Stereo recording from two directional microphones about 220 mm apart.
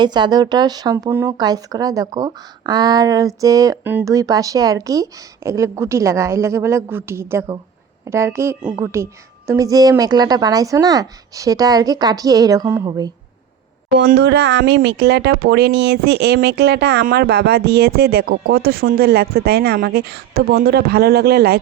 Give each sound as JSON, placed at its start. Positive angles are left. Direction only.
{"t": 0.0, "sound": "speech", "side_deg": -20}
{"t": 14.0, "sound": "speech", "side_deg": -45}